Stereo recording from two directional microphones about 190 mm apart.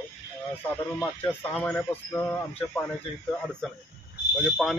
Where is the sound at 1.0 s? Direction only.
10° left (ahead or behind).